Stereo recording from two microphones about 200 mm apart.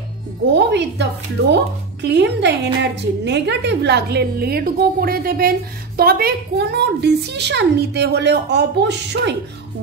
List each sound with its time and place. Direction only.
0.6 s a woman's voice: 60° right (ahead or behind)